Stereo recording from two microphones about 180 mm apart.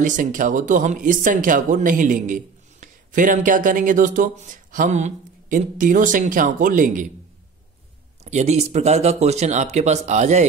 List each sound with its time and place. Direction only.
0.0 s speech: 45° right (ahead or behind)
8.2 s speech: 40° right (ahead or behind)